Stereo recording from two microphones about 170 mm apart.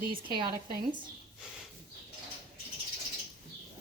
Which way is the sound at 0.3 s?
30° right (ahead or behind).